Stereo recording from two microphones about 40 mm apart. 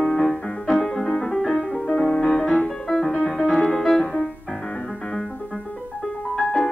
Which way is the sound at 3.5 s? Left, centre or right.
Centre.